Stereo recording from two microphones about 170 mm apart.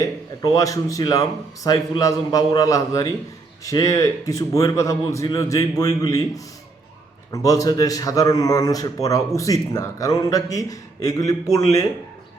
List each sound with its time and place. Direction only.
0.0 s a man's voice: 20° left (ahead or behind)